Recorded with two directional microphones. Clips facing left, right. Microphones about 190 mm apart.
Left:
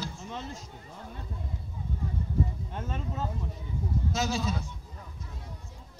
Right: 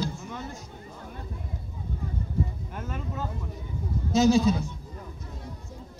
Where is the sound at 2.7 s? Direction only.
25° left (ahead or behind).